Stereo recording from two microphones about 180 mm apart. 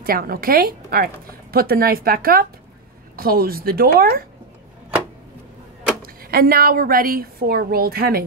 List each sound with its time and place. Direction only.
0.0 s a woman's voice: 55° right (ahead or behind)
6.0 s a woman's voice: 55° right (ahead or behind)